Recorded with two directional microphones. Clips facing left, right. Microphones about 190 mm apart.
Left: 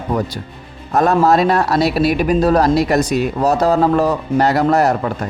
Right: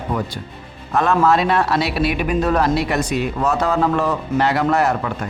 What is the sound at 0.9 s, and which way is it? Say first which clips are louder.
A man's voice: left 3 dB; 40° left (ahead or behind).